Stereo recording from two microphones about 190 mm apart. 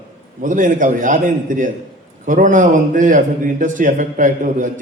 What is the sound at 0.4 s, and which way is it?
A man's voice, 45° right (ahead or behind).